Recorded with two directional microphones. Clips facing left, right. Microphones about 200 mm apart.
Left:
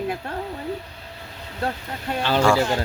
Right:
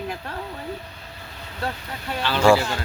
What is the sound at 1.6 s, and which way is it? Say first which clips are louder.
Speech: left 3 dB; 25° left (ahead or behind).